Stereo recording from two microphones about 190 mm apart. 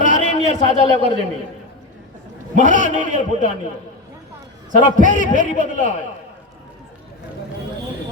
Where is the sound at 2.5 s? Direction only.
40° right (ahead or behind).